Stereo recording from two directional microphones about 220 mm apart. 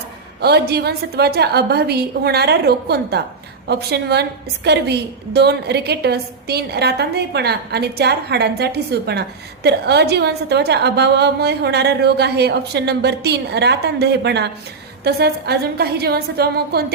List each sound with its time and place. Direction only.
0.4 s a woman's voice: 45° right (ahead or behind)